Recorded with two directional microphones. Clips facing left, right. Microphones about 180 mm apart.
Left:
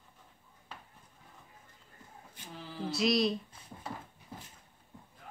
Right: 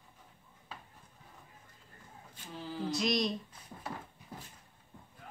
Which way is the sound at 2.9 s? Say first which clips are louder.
Left 4 dB; centre (ahead or behind).